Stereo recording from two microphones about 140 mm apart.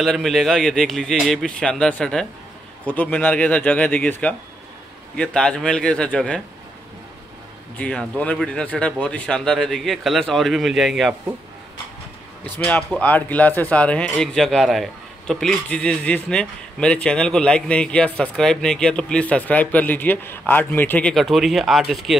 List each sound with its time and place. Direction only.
0.0 s speech: centre (ahead or behind)
7.7 s speech: 10° left (ahead or behind)
12.4 s speech: 10° left (ahead or behind)
21.1 s speech: centre (ahead or behind)